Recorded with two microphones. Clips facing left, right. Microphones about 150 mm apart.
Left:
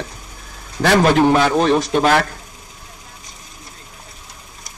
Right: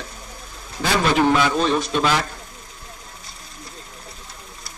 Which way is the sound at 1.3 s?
45° left (ahead or behind).